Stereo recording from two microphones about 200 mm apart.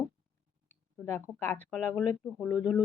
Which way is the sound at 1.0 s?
10° left (ahead or behind).